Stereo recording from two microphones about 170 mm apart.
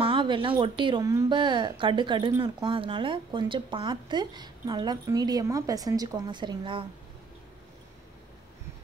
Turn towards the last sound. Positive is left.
turn(degrees=-30)  # may be behind; listen again after turning